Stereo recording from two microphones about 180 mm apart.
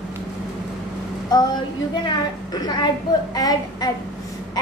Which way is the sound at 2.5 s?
25° left (ahead or behind).